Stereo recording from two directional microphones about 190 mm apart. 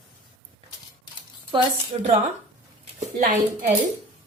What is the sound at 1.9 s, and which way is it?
A woman's voice, 35° right (ahead or behind).